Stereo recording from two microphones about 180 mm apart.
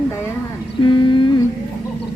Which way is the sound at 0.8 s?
25° left (ahead or behind).